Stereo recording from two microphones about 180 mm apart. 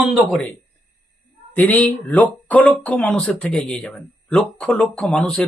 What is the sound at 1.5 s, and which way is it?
Speech, 10° left (ahead or behind).